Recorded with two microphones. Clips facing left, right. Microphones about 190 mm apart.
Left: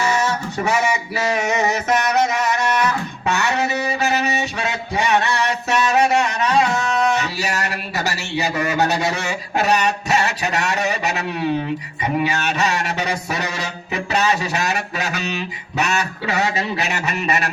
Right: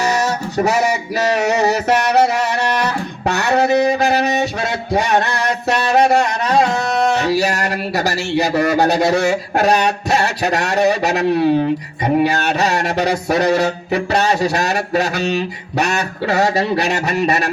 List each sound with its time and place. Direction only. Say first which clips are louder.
0.0 s male singing: right 2 dB; 40° right (ahead or behind)
3.7 s a sound: right 7 dB; 35° right (ahead or behind)
13.7 s music: right 7 dB; 40° right (ahead or behind)